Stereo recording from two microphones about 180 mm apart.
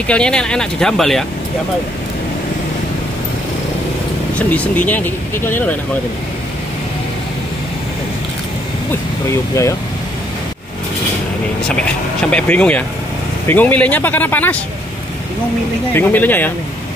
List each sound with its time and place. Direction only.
0.1 s speech: 5° left (ahead or behind)
4.4 s speech: 10° left (ahead or behind)
9.3 s speech: 15° left (ahead or behind)
11.7 s speech: 5° left (ahead or behind)
15.9 s speech: 10° left (ahead or behind)